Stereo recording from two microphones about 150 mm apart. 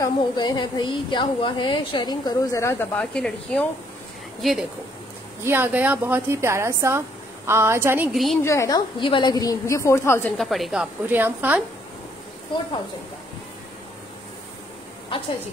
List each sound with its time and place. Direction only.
0.0 s a woman's voice: 30° left (ahead or behind); by 4.6 s centre (ahead or behind)
5.4 s speech: 15° right (ahead or behind)
8.1 s a woman's voice: centre (ahead or behind)
8.4 s a woman's voice: 20° left (ahead or behind)
10.3 s a woman's voice: centre (ahead or behind)